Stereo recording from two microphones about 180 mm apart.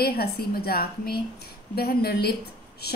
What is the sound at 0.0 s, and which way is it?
A woman's voice, 60° left (ahead or behind).